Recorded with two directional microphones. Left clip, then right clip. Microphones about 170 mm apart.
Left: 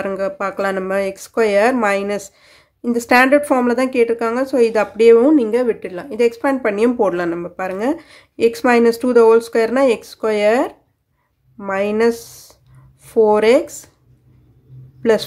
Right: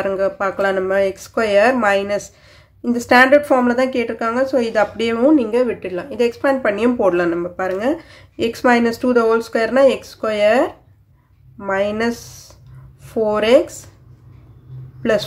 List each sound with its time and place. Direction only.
0.0 s a woman's voice: 30° left (ahead or behind)
15.0 s speech: 30° left (ahead or behind)